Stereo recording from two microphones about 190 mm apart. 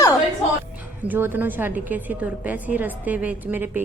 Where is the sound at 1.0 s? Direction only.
10° right (ahead or behind).